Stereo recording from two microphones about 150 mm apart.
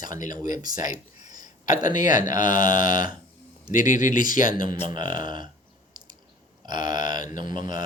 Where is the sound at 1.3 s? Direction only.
25° right (ahead or behind).